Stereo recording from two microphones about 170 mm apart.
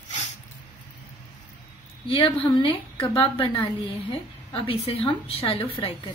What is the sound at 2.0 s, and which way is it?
A woman's voice, 30° left (ahead or behind).